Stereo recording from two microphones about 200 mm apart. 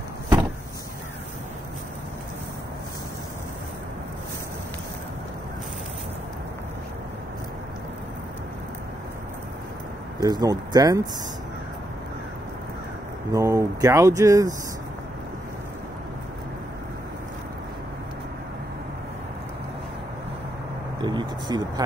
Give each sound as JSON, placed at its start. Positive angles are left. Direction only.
{"t": 10.2, "sound": "speech", "side_deg": -20}
{"t": 13.3, "sound": "speech", "side_deg": -15}
{"t": 21.0, "sound": "speech", "side_deg": -20}